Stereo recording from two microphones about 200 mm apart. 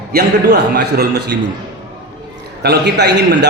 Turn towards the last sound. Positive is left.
turn(degrees=-55)  # may be behind; listen again after turning